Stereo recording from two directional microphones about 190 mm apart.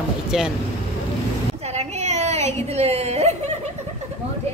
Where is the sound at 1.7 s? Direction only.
35° right (ahead or behind).